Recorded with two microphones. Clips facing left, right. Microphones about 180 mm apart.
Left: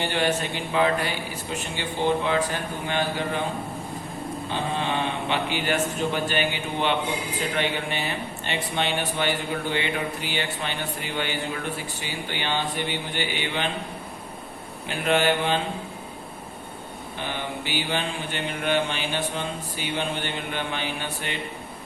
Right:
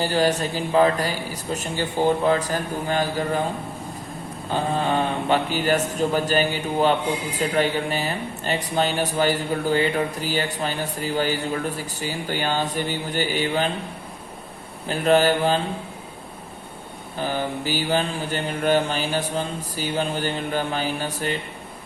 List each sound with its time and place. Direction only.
0.0 s speech: 35° right (ahead or behind)
4.4 s speech: 40° right (ahead or behind)
14.8 s speech: 40° right (ahead or behind)
17.2 s speech: 40° right (ahead or behind)